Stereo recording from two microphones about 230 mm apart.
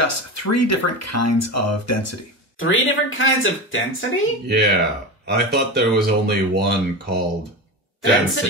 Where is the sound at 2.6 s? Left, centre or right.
Left.